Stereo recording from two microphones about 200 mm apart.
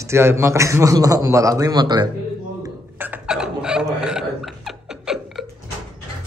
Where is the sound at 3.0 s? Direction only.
5° right (ahead or behind).